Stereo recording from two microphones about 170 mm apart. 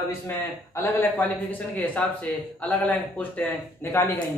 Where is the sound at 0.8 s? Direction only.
10° left (ahead or behind).